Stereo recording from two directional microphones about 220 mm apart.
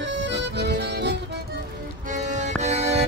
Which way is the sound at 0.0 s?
50° right (ahead or behind).